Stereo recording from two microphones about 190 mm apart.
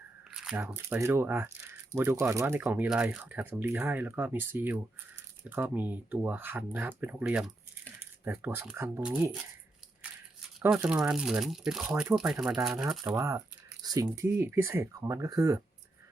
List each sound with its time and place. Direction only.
0.3 s crumpling: 5° right (ahead or behind)
0.8 s speech: 15° right (ahead or behind)
10.6 s speech: 5° right (ahead or behind)
13.1 s speech: 15° right (ahead or behind)